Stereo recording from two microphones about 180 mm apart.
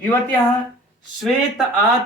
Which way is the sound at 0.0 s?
10° left (ahead or behind).